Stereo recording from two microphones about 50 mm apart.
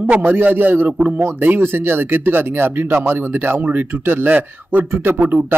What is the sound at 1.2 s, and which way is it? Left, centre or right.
A man's voice, right.